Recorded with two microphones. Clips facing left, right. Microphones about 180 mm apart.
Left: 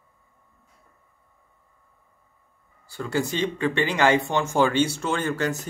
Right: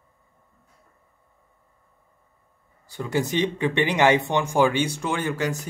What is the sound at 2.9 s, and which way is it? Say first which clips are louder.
Speech: right 1 dB; 20° right (ahead or behind).